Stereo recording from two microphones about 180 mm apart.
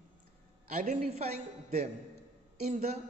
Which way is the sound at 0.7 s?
40° right (ahead or behind).